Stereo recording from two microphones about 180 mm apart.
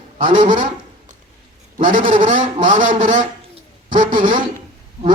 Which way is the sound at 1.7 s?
50° right (ahead or behind).